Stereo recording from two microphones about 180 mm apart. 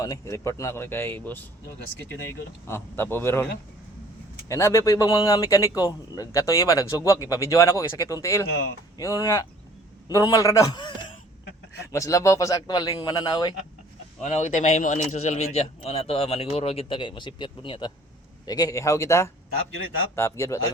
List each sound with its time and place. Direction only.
0.0 s a man's voice: 20° left (ahead or behind)
4.4 s a man's voice: 15° left (ahead or behind)
14.2 s a man's voice: 40° left (ahead or behind); by 20.6 s 15° left (ahead or behind)